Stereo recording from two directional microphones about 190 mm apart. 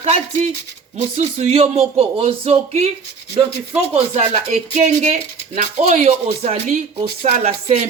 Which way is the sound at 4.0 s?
35° right (ahead or behind).